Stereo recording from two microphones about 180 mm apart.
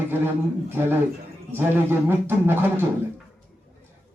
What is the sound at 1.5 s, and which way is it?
Speech, 10° right (ahead or behind).